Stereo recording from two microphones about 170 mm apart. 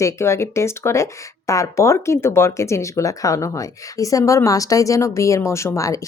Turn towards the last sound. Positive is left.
turn(degrees=15)  # may be behind; listen again after turning